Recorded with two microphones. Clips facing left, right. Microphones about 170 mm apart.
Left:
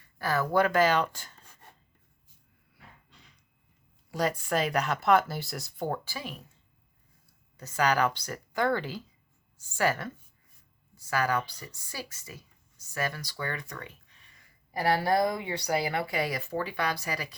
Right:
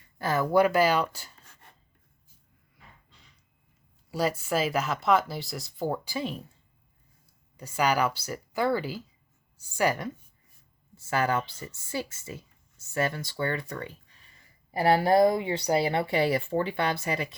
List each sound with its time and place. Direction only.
0.2 s speech: 20° right (ahead or behind)
4.1 s speech: 5° right (ahead or behind)
6.1 s speech: 25° right (ahead or behind)
7.5 s speech: 10° right (ahead or behind)
10.9 s speech: 25° right (ahead or behind)